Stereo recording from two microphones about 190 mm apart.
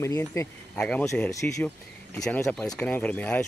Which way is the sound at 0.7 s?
5° left (ahead or behind).